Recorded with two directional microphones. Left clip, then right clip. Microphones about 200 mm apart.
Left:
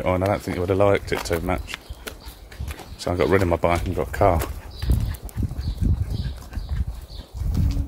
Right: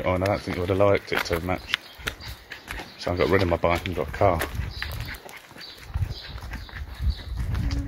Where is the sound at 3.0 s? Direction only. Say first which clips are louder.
Left 2 dB; 20° left (ahead or behind).